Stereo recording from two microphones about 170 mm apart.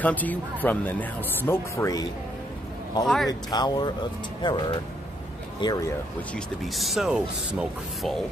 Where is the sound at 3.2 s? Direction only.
25° left (ahead or behind).